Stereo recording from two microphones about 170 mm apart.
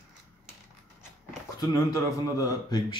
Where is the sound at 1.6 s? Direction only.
20° left (ahead or behind).